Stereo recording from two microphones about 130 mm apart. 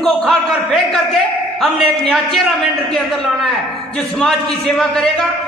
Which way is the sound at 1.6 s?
Centre (ahead or behind).